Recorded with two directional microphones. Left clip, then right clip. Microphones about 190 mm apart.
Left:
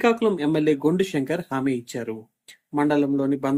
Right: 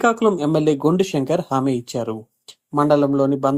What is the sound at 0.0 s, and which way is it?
Speech, 20° right (ahead or behind).